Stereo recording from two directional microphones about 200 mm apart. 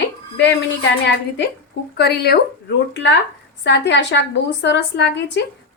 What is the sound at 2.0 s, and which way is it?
Speech, 55° left (ahead or behind).